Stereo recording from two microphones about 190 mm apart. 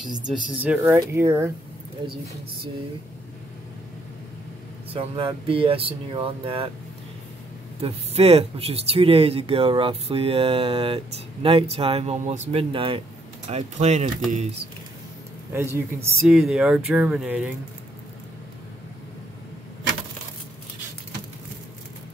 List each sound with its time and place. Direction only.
0.3 s speech: 5° right (ahead or behind)
4.9 s speech: 30° right (ahead or behind)
7.8 s speech: 30° right (ahead or behind)
15.5 s speech: 15° right (ahead or behind)
16.3 s speech: centre (ahead or behind)